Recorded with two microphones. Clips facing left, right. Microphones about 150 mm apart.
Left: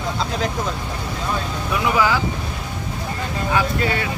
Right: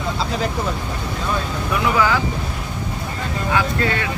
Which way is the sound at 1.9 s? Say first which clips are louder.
Even; 20° left (ahead or behind).